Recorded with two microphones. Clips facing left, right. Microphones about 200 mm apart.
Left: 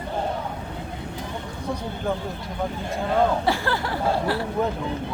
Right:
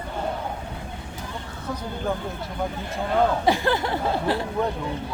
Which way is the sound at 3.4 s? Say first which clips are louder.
Right 3 dB; 20° right (ahead or behind).